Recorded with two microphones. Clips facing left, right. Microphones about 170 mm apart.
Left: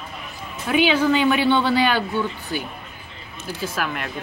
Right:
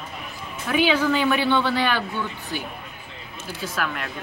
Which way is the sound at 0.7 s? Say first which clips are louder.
Left 2 dB; 20° left (ahead or behind).